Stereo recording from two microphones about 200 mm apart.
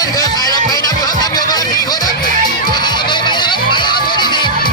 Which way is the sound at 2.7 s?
20° left (ahead or behind).